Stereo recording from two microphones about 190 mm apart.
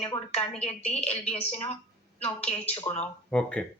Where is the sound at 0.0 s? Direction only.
30° left (ahead or behind).